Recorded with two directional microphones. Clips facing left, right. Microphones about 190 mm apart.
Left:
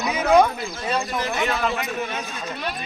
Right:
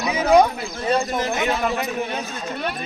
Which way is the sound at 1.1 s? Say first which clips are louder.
Right 2 dB; 25° right (ahead or behind).